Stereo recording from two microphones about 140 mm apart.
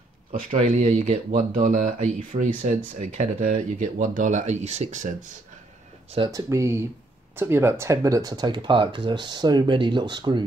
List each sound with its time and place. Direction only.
0.3 s speech: 65° right (ahead or behind)
6.1 s speech: 30° right (ahead or behind)